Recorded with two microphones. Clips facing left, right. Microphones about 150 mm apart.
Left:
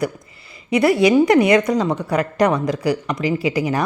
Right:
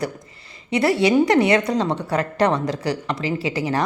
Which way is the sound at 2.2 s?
10° left (ahead or behind).